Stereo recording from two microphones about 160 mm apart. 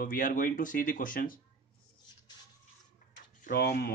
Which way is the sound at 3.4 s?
70° left (ahead or behind).